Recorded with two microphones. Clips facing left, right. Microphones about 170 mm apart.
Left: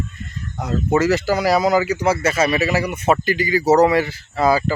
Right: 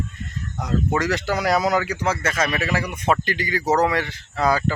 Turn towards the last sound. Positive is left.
turn(degrees=5)  # may be behind; listen again after turning